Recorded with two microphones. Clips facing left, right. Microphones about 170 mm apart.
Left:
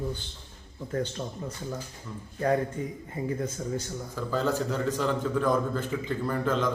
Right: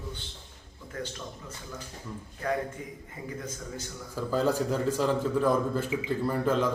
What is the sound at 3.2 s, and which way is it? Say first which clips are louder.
Speech: left 9 dB; 25° left (ahead or behind).